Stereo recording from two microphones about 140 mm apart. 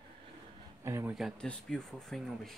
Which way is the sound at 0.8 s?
20° right (ahead or behind).